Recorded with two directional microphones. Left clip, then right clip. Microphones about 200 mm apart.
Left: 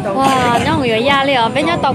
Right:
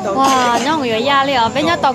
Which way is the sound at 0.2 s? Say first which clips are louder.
Even; 5° left (ahead or behind).